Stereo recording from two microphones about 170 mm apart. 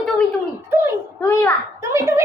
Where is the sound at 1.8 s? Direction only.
15° right (ahead or behind).